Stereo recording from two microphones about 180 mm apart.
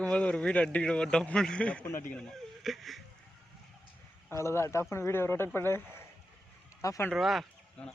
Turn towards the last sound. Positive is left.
turn(degrees=0)  # may be behind; listen again after turning